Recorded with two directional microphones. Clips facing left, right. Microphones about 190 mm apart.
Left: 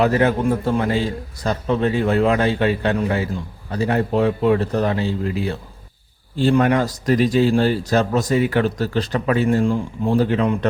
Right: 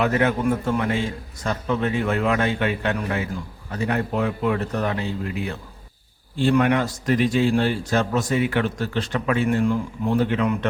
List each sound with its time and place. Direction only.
0.0 s speech: 35° left (ahead or behind)